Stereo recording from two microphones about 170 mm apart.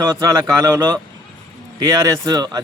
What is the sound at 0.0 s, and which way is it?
Speech, 20° right (ahead or behind).